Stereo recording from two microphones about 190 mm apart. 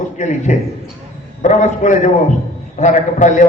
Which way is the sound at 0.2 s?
40° left (ahead or behind).